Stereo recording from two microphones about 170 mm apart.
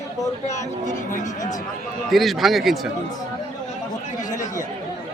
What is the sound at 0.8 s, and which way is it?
Speech, 45° left (ahead or behind).